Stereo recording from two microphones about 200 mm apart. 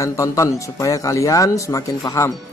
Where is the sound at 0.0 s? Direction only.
15° left (ahead or behind).